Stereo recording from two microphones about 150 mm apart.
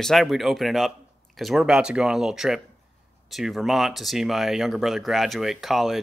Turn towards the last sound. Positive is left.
turn(degrees=0)  # may be behind; listen again after turning